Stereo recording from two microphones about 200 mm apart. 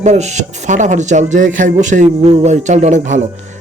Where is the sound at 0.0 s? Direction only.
35° right (ahead or behind).